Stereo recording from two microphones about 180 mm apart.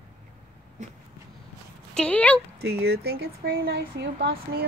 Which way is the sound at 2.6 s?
65° right (ahead or behind).